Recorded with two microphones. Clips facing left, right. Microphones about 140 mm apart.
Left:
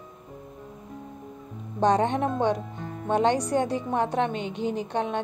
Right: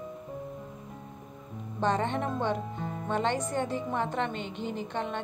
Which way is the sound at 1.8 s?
70° left (ahead or behind).